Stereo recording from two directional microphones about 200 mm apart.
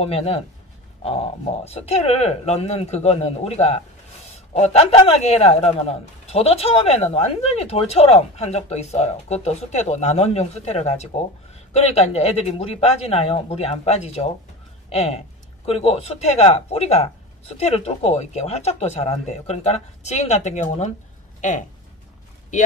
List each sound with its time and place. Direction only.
0.0 s a man's voice: 30° left (ahead or behind)